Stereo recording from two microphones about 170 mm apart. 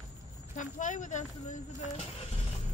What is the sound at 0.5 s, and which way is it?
Speech, 45° left (ahead or behind).